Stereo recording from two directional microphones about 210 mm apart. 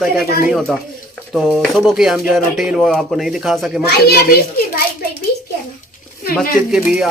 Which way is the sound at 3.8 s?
45° left (ahead or behind).